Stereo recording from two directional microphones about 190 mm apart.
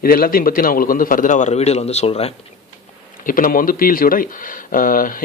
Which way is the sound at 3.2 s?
45° left (ahead or behind).